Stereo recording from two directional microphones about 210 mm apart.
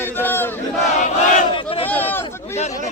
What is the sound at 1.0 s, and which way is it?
Battle cry, 35° left (ahead or behind).